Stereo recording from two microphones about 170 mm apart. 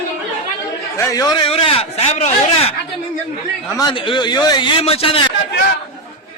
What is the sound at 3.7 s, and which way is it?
A man's voice, 25° left (ahead or behind).